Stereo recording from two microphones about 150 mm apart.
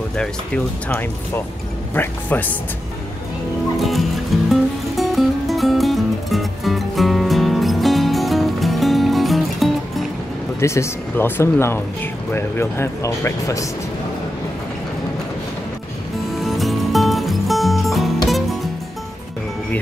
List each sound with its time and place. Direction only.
0.8 s speech: 10° left (ahead or behind)
4.5 s music: centre (ahead or behind)
10.6 s speech: 20° left (ahead or behind)
16.3 s music: centre (ahead or behind)